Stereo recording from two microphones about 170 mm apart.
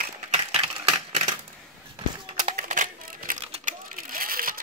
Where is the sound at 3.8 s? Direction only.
55° right (ahead or behind).